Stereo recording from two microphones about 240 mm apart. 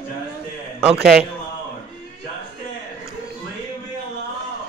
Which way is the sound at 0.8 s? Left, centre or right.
Centre.